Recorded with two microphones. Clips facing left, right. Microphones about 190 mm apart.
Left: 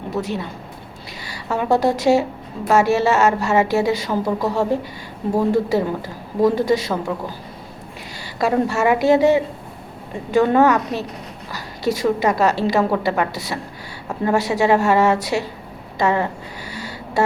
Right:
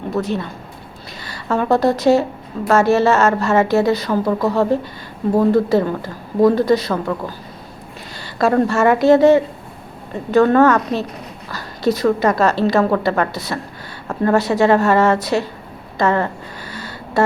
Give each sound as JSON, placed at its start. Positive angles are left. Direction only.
{"t": 0.2, "sound": "a woman's voice", "side_deg": 15}
{"t": 8.4, "sound": "a woman's voice", "side_deg": 10}
{"t": 12.0, "sound": "a woman's voice", "side_deg": 15}
{"t": 16.7, "sound": "a sound", "side_deg": 15}